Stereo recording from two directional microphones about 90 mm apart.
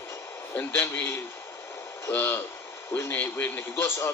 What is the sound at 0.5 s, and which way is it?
A man's voice, 20° left (ahead or behind).